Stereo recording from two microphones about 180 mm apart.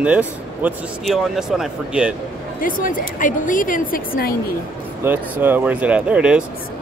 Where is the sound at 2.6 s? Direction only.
50° left (ahead or behind).